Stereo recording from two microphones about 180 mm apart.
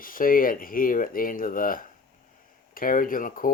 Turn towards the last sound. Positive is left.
turn(degrees=50)  # may be behind; listen again after turning